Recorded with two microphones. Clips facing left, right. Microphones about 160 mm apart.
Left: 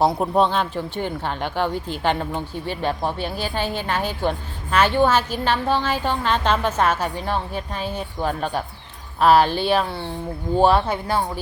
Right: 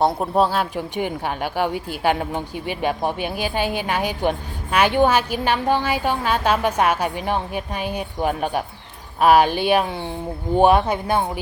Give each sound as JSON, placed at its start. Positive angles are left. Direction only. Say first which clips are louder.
{"t": 0.0, "sound": "speech", "louder": "even", "side_deg": 0}